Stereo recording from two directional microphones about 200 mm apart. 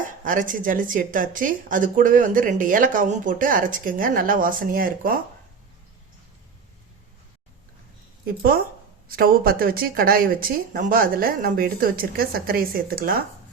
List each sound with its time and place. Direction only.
0.0 s a woman's voice: 40° right (ahead or behind)
8.4 s a woman's voice: 45° right (ahead or behind)